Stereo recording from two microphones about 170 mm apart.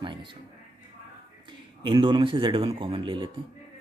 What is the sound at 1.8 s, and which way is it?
Speech, 25° right (ahead or behind).